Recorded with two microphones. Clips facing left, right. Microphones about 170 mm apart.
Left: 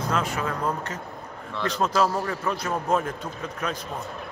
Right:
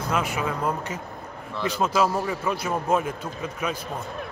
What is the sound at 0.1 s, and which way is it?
A man's voice, 10° right (ahead or behind).